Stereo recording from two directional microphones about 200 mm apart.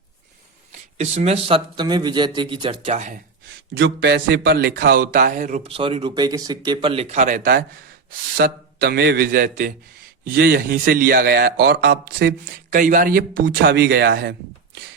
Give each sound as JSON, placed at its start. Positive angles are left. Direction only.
{"t": 0.7, "sound": "speech", "side_deg": -35}
{"t": 3.8, "sound": "a man's voice", "side_deg": -60}
{"t": 12.7, "sound": "a man's voice", "side_deg": -40}